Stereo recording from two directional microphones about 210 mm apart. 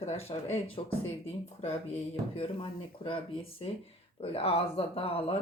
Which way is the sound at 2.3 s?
25° left (ahead or behind).